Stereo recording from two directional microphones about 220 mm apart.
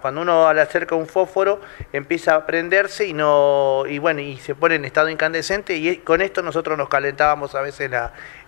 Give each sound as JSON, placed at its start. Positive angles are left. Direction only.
{"t": 0.0, "sound": "speech", "side_deg": 25}
{"t": 4.1, "sound": "speech", "side_deg": 20}